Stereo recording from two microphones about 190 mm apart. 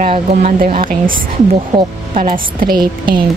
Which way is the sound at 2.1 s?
50° right (ahead or behind).